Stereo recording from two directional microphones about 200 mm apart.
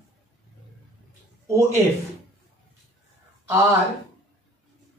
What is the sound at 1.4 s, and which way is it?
Speech, 15° right (ahead or behind).